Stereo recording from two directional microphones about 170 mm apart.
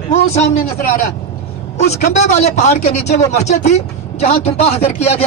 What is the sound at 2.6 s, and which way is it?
A man's voice, 40° left (ahead or behind).